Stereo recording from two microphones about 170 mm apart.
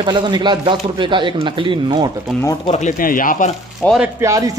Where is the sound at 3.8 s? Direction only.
10° left (ahead or behind).